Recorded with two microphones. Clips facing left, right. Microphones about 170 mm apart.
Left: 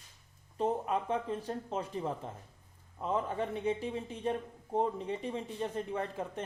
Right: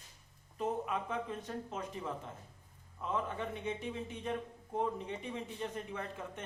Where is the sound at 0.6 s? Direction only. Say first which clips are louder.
Left 4 dB; 35° left (ahead or behind).